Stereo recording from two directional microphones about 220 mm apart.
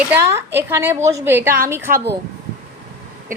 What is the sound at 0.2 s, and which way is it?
Speech, 10° right (ahead or behind).